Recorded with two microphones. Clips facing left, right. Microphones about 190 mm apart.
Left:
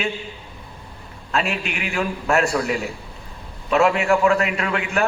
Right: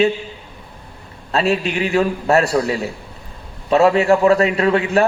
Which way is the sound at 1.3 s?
30° right (ahead or behind).